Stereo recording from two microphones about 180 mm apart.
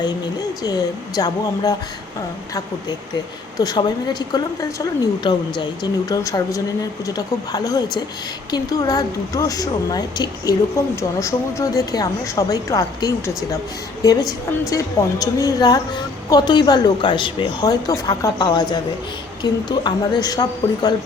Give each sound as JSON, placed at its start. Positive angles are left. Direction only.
{"t": 0.6, "sound": "a woman's voice", "side_deg": 20}
{"t": 3.6, "sound": "a woman's voice", "side_deg": 20}